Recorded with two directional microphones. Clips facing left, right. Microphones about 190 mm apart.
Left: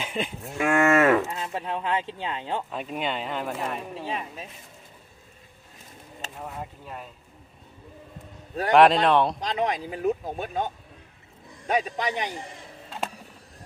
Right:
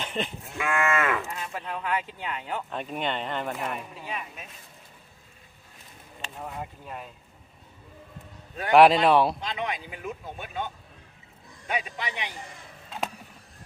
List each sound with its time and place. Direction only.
0.0 s cattle: 10° left (ahead or behind)
0.6 s cattle: 45° left (ahead or behind)
1.3 s speech: 25° left (ahead or behind)
2.6 s speech: 5° left (ahead or behind)
3.7 s speech: 30° left (ahead or behind)
6.3 s speech: centre (ahead or behind)
8.7 s speech: 5° right (ahead or behind)
9.4 s speech: 40° left (ahead or behind)
11.7 s speech: 40° left (ahead or behind)